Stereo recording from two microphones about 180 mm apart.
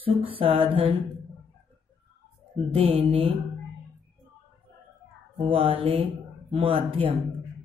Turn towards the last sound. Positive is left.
turn(degrees=-30)  # may be behind; listen again after turning